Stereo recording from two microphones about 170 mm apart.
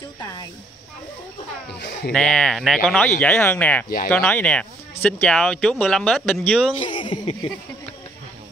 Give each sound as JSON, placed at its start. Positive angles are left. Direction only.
{"t": 1.7, "sound": "speech", "side_deg": 85}
{"t": 2.1, "sound": "speech", "side_deg": 5}
{"t": 6.8, "sound": "speech", "side_deg": 30}